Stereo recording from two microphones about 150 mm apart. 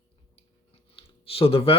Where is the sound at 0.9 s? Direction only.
40° left (ahead or behind).